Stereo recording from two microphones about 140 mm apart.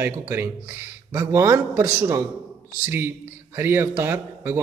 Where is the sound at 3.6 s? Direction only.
15° right (ahead or behind).